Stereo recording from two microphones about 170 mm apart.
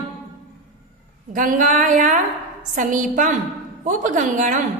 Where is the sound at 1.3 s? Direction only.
50° right (ahead or behind).